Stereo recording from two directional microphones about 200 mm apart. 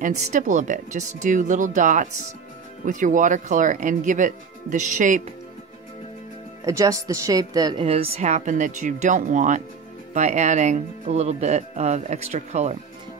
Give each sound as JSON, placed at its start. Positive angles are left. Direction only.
{"t": 0.0, "sound": "speech", "side_deg": -40}
{"t": 6.6, "sound": "speech", "side_deg": -15}
{"t": 7.8, "sound": "speech", "side_deg": -30}